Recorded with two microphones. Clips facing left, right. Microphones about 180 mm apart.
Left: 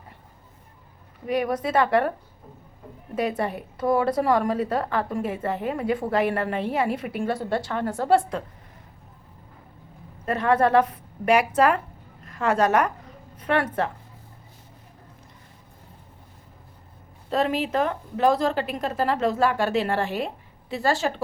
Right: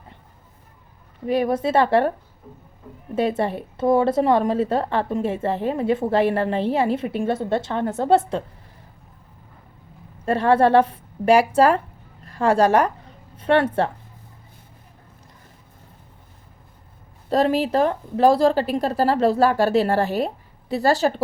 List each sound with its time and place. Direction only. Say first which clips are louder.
1.3 s a woman's voice: right 4 dB; 30° right (ahead or behind)
3.2 s a woman's voice: right 4 dB; 30° right (ahead or behind)
10.2 s a woman's voice: right 4 dB; 30° right (ahead or behind)
17.2 s a woman's voice: right 5 dB; 35° right (ahead or behind)